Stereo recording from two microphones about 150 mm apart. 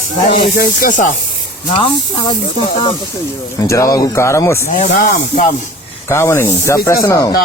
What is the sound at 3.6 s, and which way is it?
Speech, 20° left (ahead or behind).